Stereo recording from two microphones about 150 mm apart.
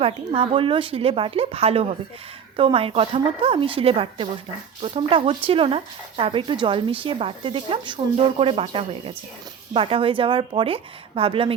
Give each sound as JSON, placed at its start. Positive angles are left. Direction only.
{"t": 0.0, "sound": "speech", "side_deg": -40}